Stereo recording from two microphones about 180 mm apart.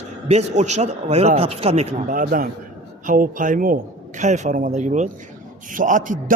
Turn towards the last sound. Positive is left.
turn(degrees=-45)  # may be behind; listen again after turning